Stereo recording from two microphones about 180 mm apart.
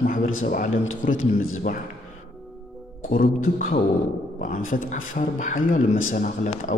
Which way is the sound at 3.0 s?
50° left (ahead or behind).